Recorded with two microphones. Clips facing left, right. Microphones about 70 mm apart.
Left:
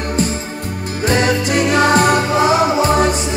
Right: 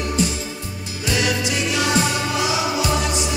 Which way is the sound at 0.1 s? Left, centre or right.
Left.